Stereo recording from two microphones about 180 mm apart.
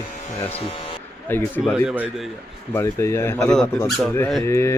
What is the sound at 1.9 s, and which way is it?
Speech, 5° right (ahead or behind).